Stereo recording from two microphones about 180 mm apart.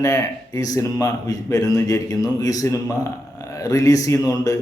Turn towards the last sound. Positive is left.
turn(degrees=20)  # may be behind; listen again after turning